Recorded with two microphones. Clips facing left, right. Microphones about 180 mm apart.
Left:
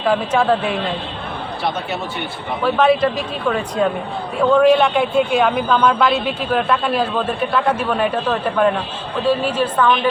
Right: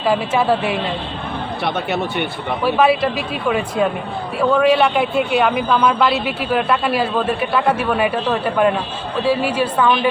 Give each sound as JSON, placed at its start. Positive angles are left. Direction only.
{"t": 0.0, "sound": "speech", "side_deg": -5}
{"t": 1.6, "sound": "speech", "side_deg": -65}
{"t": 2.6, "sound": "speech", "side_deg": -5}